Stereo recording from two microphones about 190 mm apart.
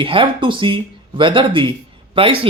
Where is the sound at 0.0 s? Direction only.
25° right (ahead or behind).